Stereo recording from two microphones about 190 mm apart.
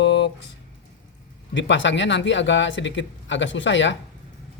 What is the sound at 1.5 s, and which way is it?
Speech, 75° left (ahead or behind).